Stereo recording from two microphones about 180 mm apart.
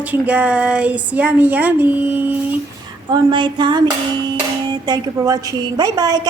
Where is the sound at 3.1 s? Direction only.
25° right (ahead or behind).